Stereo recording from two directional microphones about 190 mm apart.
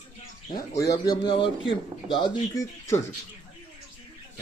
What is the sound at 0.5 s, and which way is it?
A man's voice, 20° left (ahead or behind).